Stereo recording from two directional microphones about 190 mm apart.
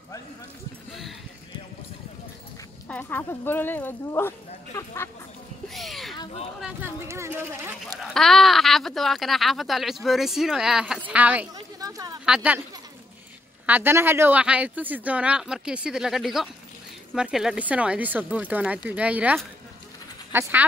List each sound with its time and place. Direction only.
2.9 s speech: 10° left (ahead or behind)
5.7 s a sound: centre (ahead or behind)
6.6 s speech: 10° right (ahead or behind)
8.0 s speech: centre (ahead or behind)
11.5 s speech: 20° right (ahead or behind)
12.3 s speech: 5° right (ahead or behind)
13.7 s speech: 10° right (ahead or behind)